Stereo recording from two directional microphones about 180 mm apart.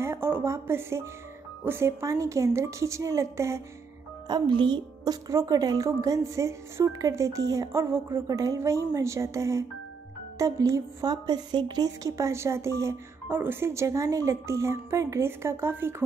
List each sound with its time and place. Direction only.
0.0 s music: 15° right (ahead or behind)
1.6 s a woman's voice: 15° right (ahead or behind)
4.3 s a woman's voice: 25° right (ahead or behind)